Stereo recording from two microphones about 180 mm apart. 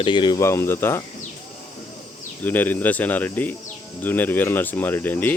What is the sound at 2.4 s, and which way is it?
Speech, 10° left (ahead or behind).